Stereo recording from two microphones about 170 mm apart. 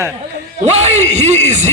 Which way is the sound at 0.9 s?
40° right (ahead or behind).